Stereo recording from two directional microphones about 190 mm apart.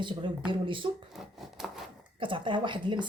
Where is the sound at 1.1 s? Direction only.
Centre (ahead or behind).